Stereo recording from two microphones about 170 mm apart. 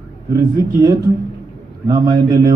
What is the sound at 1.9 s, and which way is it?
Speech, 25° right (ahead or behind).